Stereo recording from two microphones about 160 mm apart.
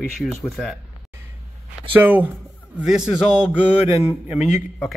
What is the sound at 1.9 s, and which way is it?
Speech, 10° right (ahead or behind).